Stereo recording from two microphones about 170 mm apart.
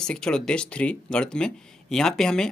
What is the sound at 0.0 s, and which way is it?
Speech, 5° left (ahead or behind).